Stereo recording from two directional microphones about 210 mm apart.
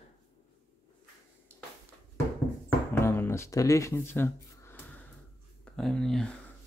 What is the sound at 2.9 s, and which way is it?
Music, 10° left (ahead or behind).